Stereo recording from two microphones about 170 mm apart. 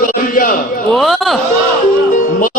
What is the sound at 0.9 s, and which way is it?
Speech, centre (ahead or behind).